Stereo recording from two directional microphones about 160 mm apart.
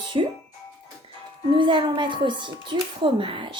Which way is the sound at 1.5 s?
30° right (ahead or behind).